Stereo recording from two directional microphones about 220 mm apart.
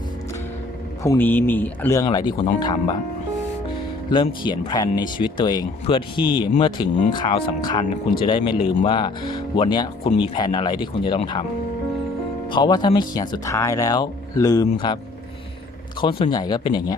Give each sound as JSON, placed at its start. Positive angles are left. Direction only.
{"t": 1.0, "sound": "speech", "side_deg": 10}
{"t": 4.1, "sound": "speech", "side_deg": 20}
{"t": 12.5, "sound": "speech", "side_deg": 20}
{"t": 16.0, "sound": "speech", "side_deg": 25}